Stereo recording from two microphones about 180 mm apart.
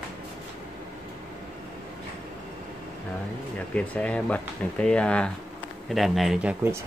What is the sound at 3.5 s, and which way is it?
Speech, 10° left (ahead or behind).